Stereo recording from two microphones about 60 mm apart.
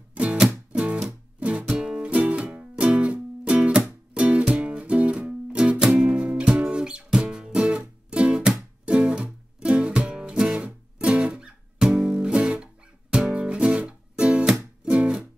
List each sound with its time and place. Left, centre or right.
0.1 s music: right